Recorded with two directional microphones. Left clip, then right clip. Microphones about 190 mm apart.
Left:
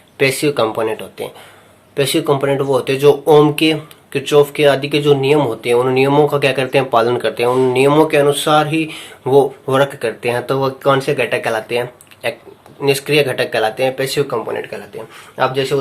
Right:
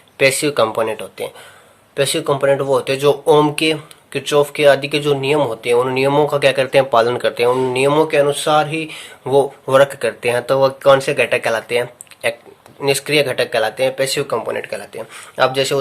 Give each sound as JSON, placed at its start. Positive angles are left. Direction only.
{"t": 0.2, "sound": "speech", "side_deg": -35}